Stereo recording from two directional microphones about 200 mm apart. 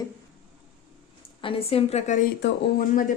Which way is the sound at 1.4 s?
25° left (ahead or behind).